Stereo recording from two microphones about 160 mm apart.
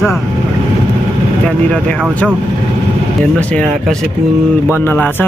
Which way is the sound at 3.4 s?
5° left (ahead or behind).